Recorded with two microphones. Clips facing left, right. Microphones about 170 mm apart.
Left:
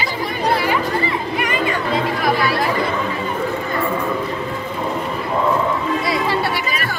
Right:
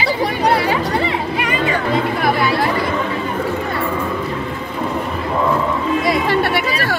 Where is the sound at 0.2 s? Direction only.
70° right (ahead or behind).